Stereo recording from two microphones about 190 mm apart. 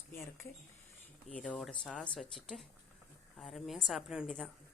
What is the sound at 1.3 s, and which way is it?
Speech, 5° left (ahead or behind).